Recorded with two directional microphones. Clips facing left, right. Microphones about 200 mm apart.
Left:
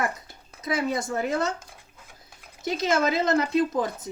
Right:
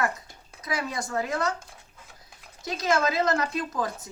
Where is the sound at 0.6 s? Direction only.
25° left (ahead or behind).